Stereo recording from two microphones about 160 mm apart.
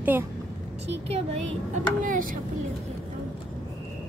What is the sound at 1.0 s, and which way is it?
Speech, 40° right (ahead or behind).